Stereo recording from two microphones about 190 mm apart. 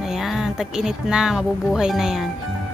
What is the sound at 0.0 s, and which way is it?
A woman's voice, centre (ahead or behind).